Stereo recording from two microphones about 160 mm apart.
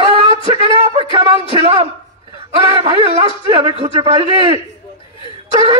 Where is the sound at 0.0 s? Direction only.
35° right (ahead or behind).